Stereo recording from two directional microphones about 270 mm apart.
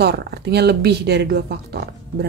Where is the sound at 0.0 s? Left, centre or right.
Right.